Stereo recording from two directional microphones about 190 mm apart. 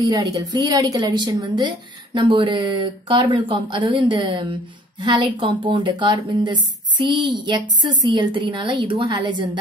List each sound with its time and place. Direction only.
0.1 s a woman's voice: 20° right (ahead or behind)